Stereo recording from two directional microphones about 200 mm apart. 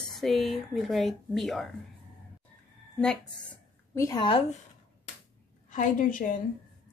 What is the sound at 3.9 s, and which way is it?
Speech, 20° left (ahead or behind).